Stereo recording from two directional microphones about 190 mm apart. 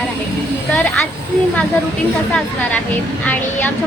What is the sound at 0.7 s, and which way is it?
Speech, 5° left (ahead or behind).